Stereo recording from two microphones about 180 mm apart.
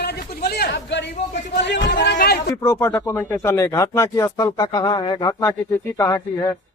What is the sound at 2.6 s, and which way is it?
Speech, 15° left (ahead or behind).